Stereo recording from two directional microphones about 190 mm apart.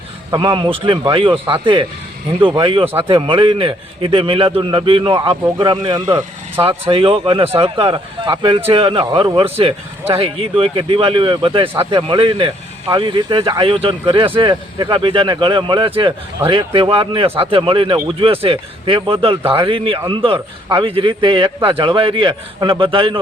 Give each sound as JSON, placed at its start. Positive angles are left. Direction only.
{"t": 0.3, "sound": "speech", "side_deg": -25}